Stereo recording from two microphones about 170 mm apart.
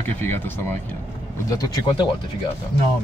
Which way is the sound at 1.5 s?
20° left (ahead or behind).